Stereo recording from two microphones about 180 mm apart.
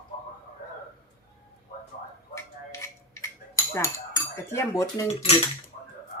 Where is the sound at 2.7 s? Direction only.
15° left (ahead or behind).